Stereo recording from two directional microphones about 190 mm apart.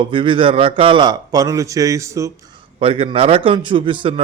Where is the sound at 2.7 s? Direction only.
30° right (ahead or behind).